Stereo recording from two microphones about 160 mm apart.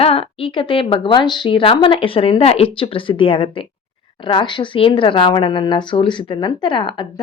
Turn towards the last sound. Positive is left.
turn(degrees=30)  # may be behind; listen again after turning